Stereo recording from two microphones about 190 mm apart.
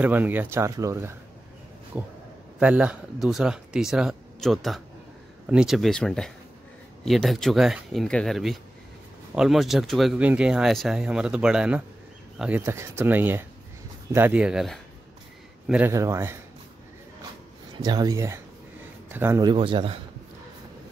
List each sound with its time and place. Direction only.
0.0 s speech: 10° right (ahead or behind)
15.9 s speech: 15° right (ahead or behind)
17.7 s a man's voice: 20° right (ahead or behind)